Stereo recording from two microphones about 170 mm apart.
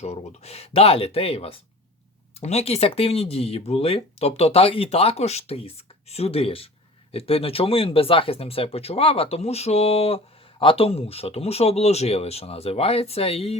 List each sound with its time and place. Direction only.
0.0 s speech: 40° left (ahead or behind)